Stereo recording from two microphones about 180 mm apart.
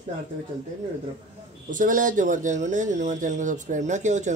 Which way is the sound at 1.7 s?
45° right (ahead or behind).